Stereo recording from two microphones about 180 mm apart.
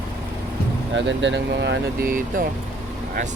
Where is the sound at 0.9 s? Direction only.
90° right.